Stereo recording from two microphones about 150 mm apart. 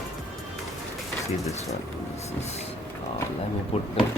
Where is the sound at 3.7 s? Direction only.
40° left (ahead or behind).